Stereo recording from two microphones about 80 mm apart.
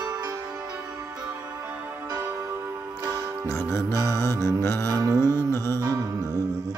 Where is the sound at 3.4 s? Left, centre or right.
Left.